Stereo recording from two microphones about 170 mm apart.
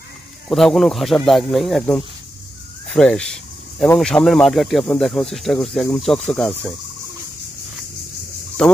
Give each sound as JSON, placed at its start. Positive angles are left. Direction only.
{"t": 0.5, "sound": "speech", "side_deg": 0}
{"t": 6.3, "sound": "turkey", "side_deg": 10}
{"t": 8.6, "sound": "speech", "side_deg": 5}